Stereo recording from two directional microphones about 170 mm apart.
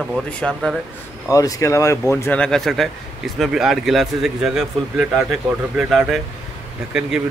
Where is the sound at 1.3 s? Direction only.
20° left (ahead or behind); by 7.2 s 5° right (ahead or behind).